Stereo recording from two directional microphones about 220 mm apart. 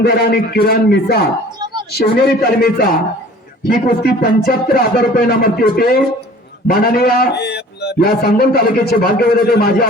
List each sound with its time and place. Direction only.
0.0 s a man's voice: 45° left (ahead or behind)